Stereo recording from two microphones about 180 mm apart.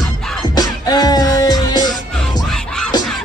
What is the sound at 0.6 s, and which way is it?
Music, 20° left (ahead or behind).